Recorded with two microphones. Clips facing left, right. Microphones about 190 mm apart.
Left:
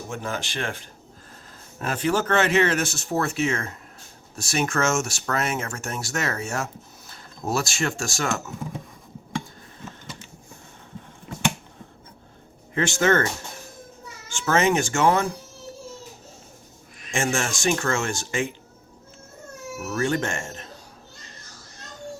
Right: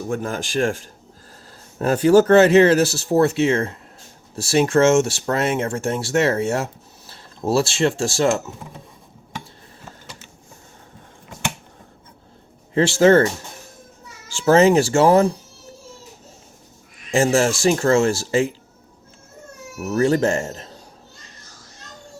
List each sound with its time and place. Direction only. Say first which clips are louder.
0.1 s speech: right 6 dB; 45° right (ahead or behind)
2.0 s speech: right 10 dB; 35° right (ahead or behind)
12.7 s speech: right 8 dB; 30° right (ahead or behind)
14.3 s speech: right 8 dB; 35° right (ahead or behind)
17.1 s speech: right 9 dB; 35° right (ahead or behind)
19.9 s speech: right 8 dB; 35° right (ahead or behind)